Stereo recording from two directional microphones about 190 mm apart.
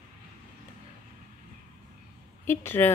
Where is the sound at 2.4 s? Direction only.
10° left (ahead or behind).